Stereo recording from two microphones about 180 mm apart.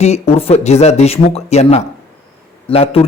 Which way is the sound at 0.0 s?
35° left (ahead or behind).